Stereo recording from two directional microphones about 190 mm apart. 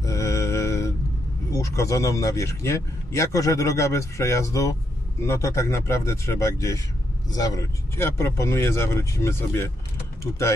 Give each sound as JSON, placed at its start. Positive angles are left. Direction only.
{"t": 0.0, "sound": "mantra", "side_deg": 15}
{"t": 1.5, "sound": "speech", "side_deg": 15}